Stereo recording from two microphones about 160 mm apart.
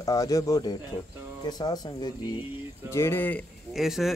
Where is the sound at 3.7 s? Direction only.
Centre (ahead or behind).